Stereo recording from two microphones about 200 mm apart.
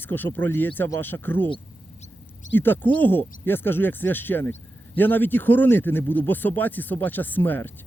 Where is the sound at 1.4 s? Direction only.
25° left (ahead or behind).